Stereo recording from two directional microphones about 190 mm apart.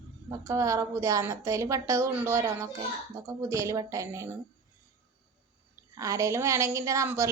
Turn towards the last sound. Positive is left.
turn(degrees=-15)  # may be behind; listen again after turning